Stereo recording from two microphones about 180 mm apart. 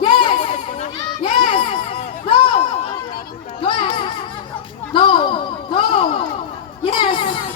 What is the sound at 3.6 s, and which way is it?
Music, 30° left (ahead or behind).